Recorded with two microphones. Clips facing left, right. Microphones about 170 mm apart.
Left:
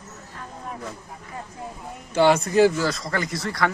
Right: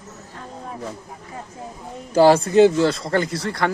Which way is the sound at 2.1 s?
35° right (ahead or behind).